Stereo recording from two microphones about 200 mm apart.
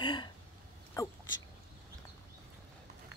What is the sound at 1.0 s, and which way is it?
Speech, 15° left (ahead or behind).